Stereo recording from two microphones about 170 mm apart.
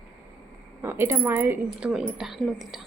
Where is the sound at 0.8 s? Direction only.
15° right (ahead or behind).